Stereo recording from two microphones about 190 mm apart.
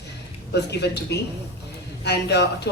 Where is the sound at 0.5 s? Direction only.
60° left (ahead or behind).